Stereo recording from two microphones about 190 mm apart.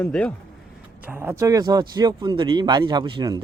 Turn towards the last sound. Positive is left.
turn(degrees=-25)  # may be behind; listen again after turning